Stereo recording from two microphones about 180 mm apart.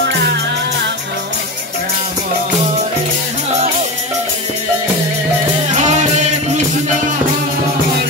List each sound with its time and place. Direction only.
5.7 s music: 40° right (ahead or behind)